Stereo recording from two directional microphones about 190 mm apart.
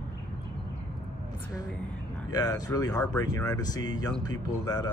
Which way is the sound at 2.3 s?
20° left (ahead or behind).